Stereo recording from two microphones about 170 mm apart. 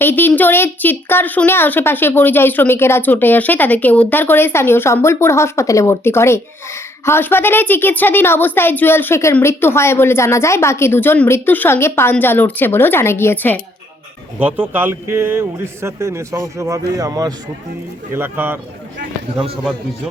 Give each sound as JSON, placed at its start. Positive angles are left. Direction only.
{"t": 0.0, "sound": "a child's voice", "side_deg": 10}
{"t": 14.3, "sound": "speech", "side_deg": -10}